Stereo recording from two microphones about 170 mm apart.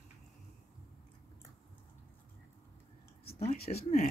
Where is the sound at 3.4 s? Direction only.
40° left (ahead or behind).